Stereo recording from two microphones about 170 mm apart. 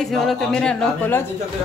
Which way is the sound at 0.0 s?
Centre (ahead or behind).